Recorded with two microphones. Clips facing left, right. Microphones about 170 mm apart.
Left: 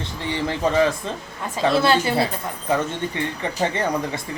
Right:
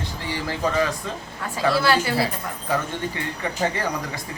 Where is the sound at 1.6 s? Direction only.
25° left (ahead or behind).